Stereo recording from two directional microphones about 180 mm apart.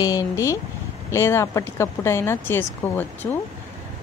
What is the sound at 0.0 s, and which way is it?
Speech, 20° left (ahead or behind).